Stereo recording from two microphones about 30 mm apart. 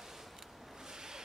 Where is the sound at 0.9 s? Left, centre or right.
Right.